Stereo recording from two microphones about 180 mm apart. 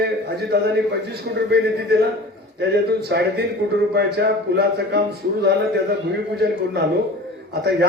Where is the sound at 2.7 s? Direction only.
65° right (ahead or behind).